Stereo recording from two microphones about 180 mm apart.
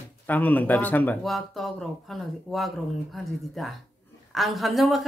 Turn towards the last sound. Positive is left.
turn(degrees=0)  # may be behind; listen again after turning